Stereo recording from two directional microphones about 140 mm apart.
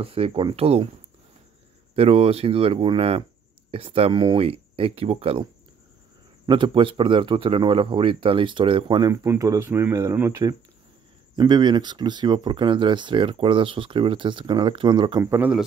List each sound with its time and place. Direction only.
0.0 s speech: 40° right (ahead or behind)
2.0 s speech: 45° right (ahead or behind)
9.1 s speech: 20° right (ahead or behind)
11.3 s speech: 30° right (ahead or behind)
15.2 s speech: 15° right (ahead or behind)